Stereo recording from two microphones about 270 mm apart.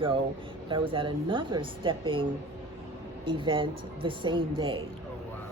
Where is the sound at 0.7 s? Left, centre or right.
Centre.